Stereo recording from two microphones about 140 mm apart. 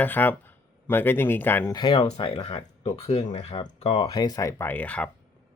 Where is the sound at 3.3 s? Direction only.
35° left (ahead or behind).